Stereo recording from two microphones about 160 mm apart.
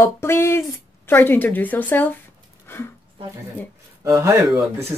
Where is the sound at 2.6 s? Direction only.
15° left (ahead or behind).